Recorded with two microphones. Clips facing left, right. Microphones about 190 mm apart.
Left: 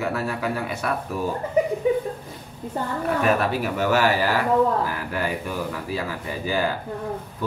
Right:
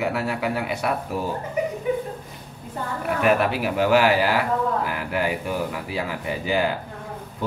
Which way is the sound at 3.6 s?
15° right (ahead or behind).